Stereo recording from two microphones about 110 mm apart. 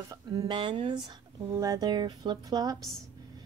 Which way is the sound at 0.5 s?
45° right (ahead or behind).